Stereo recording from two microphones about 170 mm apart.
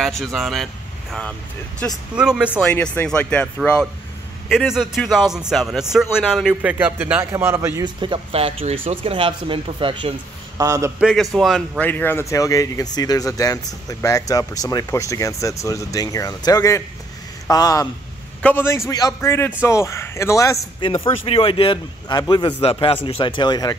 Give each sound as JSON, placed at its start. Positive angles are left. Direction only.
{"t": 0.0, "sound": "speech", "side_deg": 0}
{"t": 2.1, "sound": "speech", "side_deg": -5}
{"t": 2.7, "sound": "speech", "side_deg": 10}
{"t": 4.5, "sound": "a man's voice", "side_deg": 0}
{"t": 7.8, "sound": "speech", "side_deg": -30}
{"t": 10.6, "sound": "a man's voice", "side_deg": -20}
{"t": 11.0, "sound": "speech", "side_deg": 0}
{"t": 21.3, "sound": "a man's voice", "side_deg": 30}